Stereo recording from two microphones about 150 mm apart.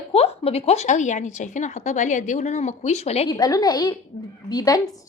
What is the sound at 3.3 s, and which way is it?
A woman's voice, 25° left (ahead or behind).